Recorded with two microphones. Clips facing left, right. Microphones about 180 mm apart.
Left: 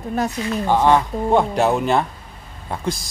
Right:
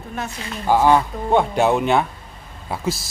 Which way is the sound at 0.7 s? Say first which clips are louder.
Right 1 dB; 5° right (ahead or behind).